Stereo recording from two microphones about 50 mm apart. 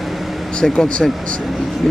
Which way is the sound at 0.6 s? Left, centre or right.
Centre.